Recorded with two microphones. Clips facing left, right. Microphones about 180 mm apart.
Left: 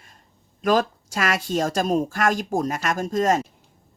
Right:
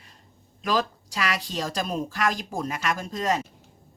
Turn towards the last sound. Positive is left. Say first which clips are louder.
# left 6 dB
turn(degrees=45)  # may be behind; listen again after turning